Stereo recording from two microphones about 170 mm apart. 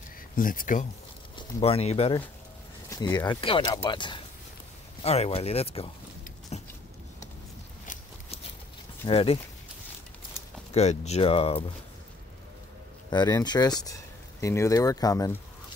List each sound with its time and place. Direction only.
0.4 s speech: 55° left (ahead or behind)
1.3 s speech: 35° left (ahead or behind)
2.9 s speech: 20° left (ahead or behind)
5.0 s speech: 35° left (ahead or behind)
6.5 s a sound: 40° left (ahead or behind)
7.8 s a sound: 50° left (ahead or behind)
9.0 s speech: 35° left (ahead or behind)
10.7 s speech: 40° left (ahead or behind)
13.1 s speech: 25° left (ahead or behind)